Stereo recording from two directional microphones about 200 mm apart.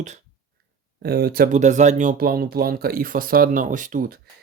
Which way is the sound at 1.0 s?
50° right (ahead or behind).